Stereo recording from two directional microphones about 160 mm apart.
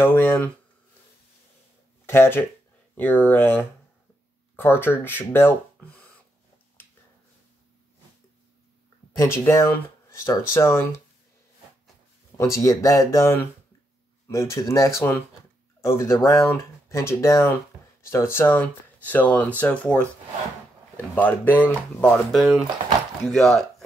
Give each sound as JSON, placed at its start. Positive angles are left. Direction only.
{"t": 0.0, "sound": "speech", "side_deg": 15}
{"t": 2.0, "sound": "speech", "side_deg": 15}
{"t": 9.1, "sound": "speech", "side_deg": 15}
{"t": 12.4, "sound": "speech", "side_deg": 20}